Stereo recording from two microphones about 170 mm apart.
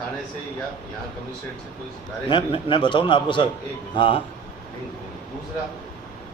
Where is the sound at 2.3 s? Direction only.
30° left (ahead or behind).